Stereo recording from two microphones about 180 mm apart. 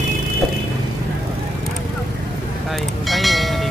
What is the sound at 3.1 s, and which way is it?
Music, centre (ahead or behind).